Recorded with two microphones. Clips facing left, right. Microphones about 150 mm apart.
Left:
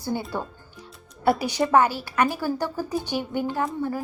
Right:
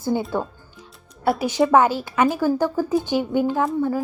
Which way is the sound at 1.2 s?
Centre (ahead or behind).